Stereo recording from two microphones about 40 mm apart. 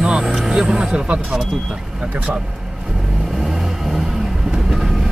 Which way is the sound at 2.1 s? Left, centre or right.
Right.